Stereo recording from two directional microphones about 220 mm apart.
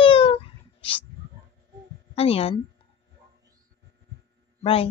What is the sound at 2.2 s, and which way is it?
Speech, 25° left (ahead or behind).